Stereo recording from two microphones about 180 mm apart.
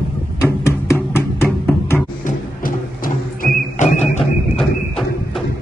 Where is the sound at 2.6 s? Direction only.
50° left (ahead or behind).